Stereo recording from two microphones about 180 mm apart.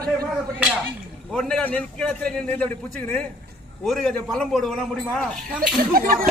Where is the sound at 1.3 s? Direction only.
Centre (ahead or behind).